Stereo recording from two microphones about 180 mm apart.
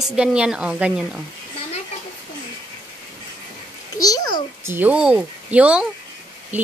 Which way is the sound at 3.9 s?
20° left (ahead or behind).